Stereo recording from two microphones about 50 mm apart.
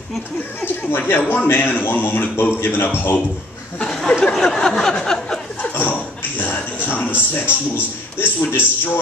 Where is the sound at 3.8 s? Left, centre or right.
Centre.